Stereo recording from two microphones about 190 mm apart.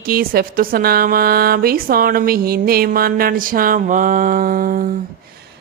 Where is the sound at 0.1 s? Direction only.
50° right (ahead or behind).